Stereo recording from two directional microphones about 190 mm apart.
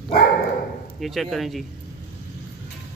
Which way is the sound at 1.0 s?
Centre (ahead or behind).